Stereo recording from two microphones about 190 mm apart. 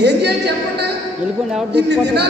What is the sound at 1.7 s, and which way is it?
Speech, 65° right (ahead or behind).